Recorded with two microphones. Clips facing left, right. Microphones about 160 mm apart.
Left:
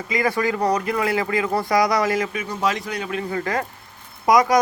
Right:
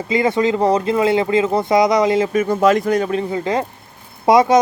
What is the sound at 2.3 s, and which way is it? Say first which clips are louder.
Speech: right 10 dB; 50° right (ahead or behind).